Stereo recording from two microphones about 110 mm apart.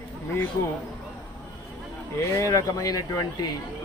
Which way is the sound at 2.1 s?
25° left (ahead or behind).